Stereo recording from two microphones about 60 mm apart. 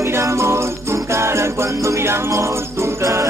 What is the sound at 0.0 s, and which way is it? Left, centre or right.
Music, right.